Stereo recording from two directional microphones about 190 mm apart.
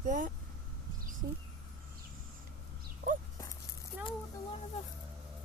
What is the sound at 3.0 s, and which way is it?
Dog, 55° right (ahead or behind).